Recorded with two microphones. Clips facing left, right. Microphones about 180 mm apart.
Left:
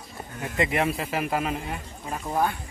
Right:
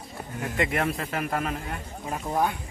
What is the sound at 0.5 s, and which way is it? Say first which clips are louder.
A man's voice: left 2 dB; centre (ahead or behind).